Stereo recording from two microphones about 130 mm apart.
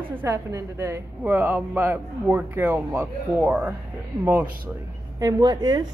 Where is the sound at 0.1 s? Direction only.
20° right (ahead or behind).